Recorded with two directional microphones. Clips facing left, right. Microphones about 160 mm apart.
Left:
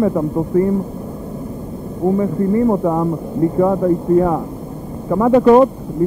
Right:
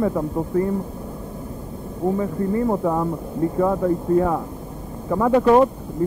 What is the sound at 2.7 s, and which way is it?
Speech, 25° left (ahead or behind).